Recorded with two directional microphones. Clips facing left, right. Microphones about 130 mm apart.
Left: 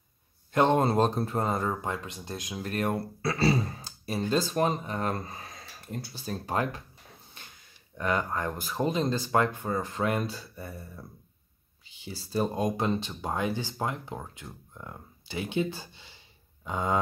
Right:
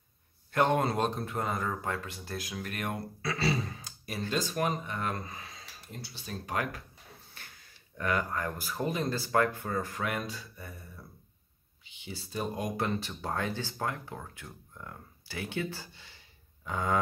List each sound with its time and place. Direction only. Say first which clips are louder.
0.5 s speech: left 4 dB; 25° left (ahead or behind)
2.7 s speech: left 9 dB; 35° left (ahead or behind)
5.5 s speech: left 7 dB; 50° left (ahead or behind); by 6.8 s 30° left (ahead or behind)
7.4 s a sound: left 2 dB; 20° left (ahead or behind)
8.0 s speech: left 2 dB; 25° left (ahead or behind)
11.9 s speech: left 6 dB; 40° left (ahead or behind)
12.5 s speech: left 4 dB; 25° left (ahead or behind)